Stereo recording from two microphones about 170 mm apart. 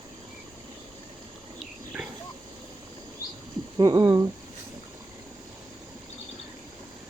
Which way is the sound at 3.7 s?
20° right (ahead or behind).